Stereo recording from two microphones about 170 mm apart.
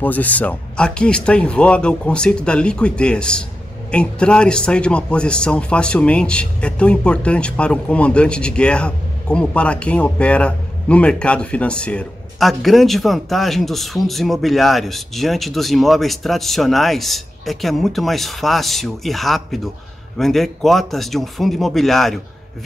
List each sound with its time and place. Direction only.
0.0 s a man's voice: 10° left (ahead or behind)